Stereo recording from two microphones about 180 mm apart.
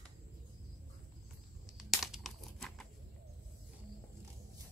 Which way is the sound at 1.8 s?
Centre (ahead or behind).